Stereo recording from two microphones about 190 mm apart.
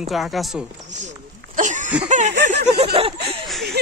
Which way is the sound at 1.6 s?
40° right (ahead or behind).